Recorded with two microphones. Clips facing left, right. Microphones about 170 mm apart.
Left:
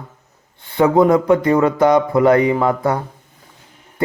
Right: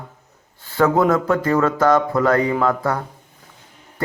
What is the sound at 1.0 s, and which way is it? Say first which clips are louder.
Speech: left 5 dB; 15° left (ahead or behind).